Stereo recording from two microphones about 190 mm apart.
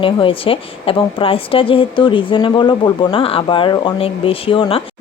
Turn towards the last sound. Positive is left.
turn(degrees=30)  # may be behind; listen again after turning